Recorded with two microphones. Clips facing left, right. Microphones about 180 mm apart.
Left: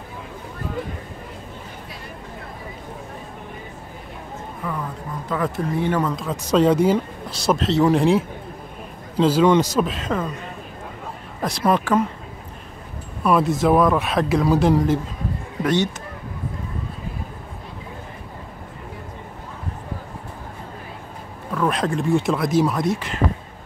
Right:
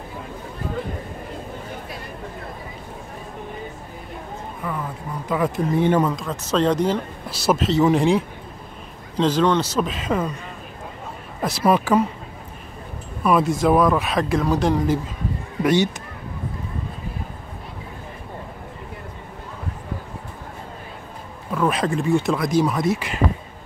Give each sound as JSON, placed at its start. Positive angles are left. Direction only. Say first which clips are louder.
{"t": 5.3, "sound": "speech", "louder": "right 2 dB", "side_deg": -15}
{"t": 6.1, "sound": "speech", "louder": "left 3 dB", "side_deg": 10}
{"t": 7.2, "sound": "speech", "louder": "right 2 dB", "side_deg": -5}
{"t": 9.8, "sound": "speech", "louder": "right 1 dB", "side_deg": 0}
{"t": 11.4, "sound": "speech", "louder": "right 1 dB", "side_deg": -5}
{"t": 13.2, "sound": "speech", "louder": "even", "side_deg": 0}
{"t": 15.6, "sound": "speech", "louder": "right 2 dB", "side_deg": -10}
{"t": 21.5, "sound": "speech", "louder": "right 1 dB", "side_deg": -5}